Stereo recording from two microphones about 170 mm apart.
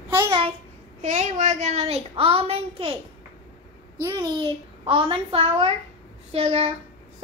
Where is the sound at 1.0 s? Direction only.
45° right (ahead or behind).